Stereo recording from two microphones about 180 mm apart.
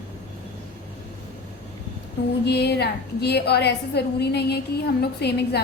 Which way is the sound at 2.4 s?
65° left (ahead or behind).